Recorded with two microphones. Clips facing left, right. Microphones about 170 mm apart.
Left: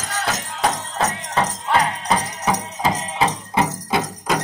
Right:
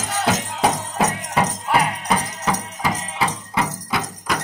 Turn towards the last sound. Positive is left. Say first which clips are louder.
# left 3 dB
turn(degrees=25)  # may be behind; listen again after turning